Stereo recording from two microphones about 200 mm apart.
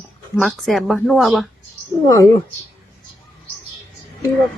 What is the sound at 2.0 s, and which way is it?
Speech, 15° left (ahead or behind).